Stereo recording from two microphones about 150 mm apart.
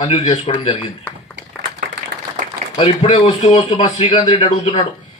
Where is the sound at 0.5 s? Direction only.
35° left (ahead or behind).